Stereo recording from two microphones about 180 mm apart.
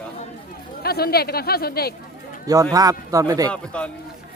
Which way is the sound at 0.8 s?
60° left (ahead or behind).